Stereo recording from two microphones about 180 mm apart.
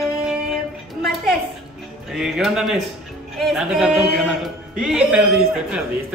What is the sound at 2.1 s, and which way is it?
Speech, centre (ahead or behind).